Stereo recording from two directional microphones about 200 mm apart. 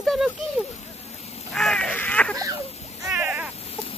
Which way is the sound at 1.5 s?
Centre (ahead or behind).